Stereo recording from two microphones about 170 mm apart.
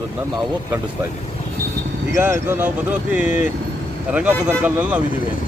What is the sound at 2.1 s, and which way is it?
Speech, 15° right (ahead or behind).